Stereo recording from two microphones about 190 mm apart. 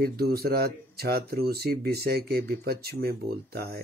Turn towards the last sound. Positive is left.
turn(degrees=-55)  # may be behind; listen again after turning